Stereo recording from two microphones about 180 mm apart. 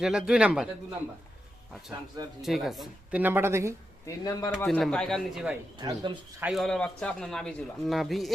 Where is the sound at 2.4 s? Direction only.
Centre (ahead or behind).